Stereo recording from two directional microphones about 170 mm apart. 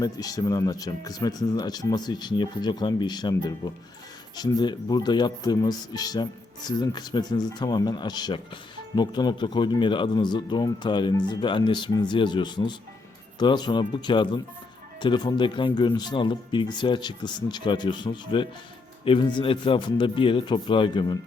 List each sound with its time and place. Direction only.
0.0 s speech: 20° left (ahead or behind)